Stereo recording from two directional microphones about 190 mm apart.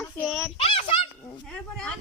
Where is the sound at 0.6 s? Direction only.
30° left (ahead or behind).